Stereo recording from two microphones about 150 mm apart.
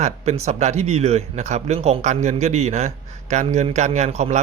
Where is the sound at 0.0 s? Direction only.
45° right (ahead or behind).